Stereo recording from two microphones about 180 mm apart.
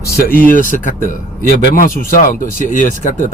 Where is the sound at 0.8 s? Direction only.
45° left (ahead or behind).